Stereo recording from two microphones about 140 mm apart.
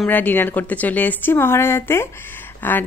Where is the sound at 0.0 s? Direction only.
15° left (ahead or behind).